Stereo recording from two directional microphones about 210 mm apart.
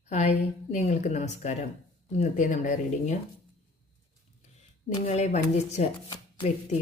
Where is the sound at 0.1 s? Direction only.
35° left (ahead or behind).